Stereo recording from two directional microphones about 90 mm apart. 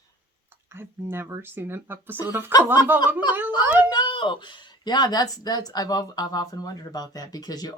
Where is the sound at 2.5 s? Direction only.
50° left (ahead or behind).